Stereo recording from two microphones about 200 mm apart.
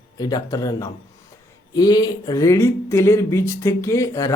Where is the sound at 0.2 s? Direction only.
20° left (ahead or behind).